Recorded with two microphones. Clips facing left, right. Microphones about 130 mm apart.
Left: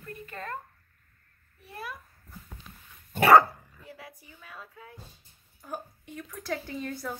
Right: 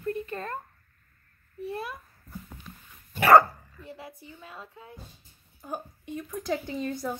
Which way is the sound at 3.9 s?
25° right (ahead or behind).